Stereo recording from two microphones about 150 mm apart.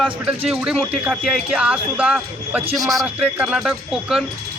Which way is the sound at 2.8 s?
25° right (ahead or behind).